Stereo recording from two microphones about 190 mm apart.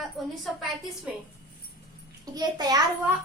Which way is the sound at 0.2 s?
Centre (ahead or behind).